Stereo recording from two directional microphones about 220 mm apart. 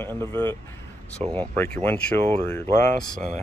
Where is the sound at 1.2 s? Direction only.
30° right (ahead or behind).